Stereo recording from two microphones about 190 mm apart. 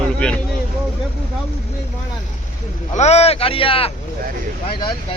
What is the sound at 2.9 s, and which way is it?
Speech, 35° left (ahead or behind).